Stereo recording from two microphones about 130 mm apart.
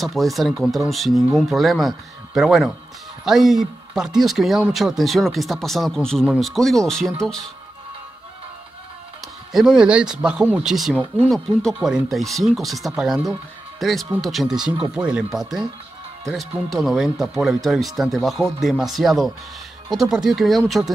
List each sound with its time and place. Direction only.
0.0 s speech: centre (ahead or behind)
9.5 s speech: 5° right (ahead or behind)